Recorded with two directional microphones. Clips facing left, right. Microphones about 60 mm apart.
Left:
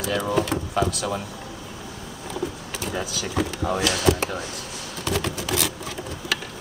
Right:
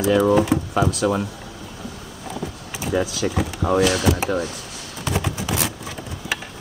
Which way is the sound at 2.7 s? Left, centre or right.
Centre.